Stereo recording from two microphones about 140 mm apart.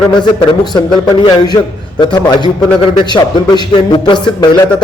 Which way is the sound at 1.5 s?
20° left (ahead or behind).